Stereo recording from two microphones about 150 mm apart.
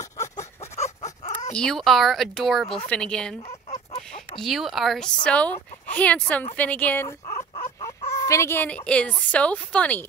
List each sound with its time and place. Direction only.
0.4 s a sound: 50° left (ahead or behind)
1.5 s speech: 5° left (ahead or behind)
3.4 s chicken: 40° left (ahead or behind)
4.4 s a woman's voice: centre (ahead or behind)
7.2 s a sound: 50° left (ahead or behind)
8.3 s a woman's voice: 15° left (ahead or behind)